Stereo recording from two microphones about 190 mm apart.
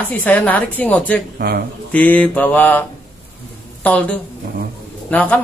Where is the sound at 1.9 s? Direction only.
5° left (ahead or behind).